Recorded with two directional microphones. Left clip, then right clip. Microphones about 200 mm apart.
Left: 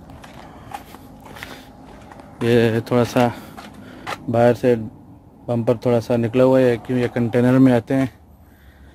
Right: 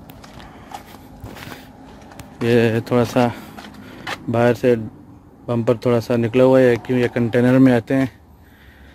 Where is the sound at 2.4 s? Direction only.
Centre (ahead or behind).